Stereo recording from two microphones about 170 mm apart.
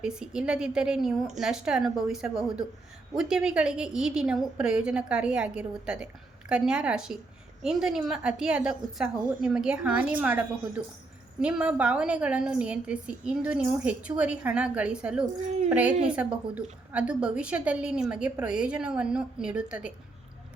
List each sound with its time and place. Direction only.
0.0 s a woman's voice: 5° right (ahead or behind)